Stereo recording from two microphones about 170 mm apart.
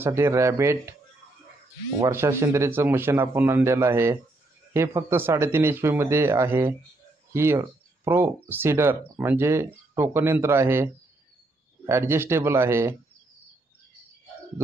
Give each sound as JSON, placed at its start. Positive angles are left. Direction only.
{"t": 0.0, "sound": "speech", "side_deg": -15}
{"t": 2.0, "sound": "speech", "side_deg": -15}